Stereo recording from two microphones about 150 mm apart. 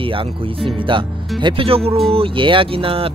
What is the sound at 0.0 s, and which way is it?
Speech, 35° right (ahead or behind).